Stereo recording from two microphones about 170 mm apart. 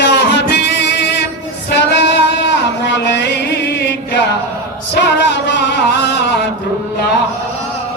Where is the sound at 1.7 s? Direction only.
80° left.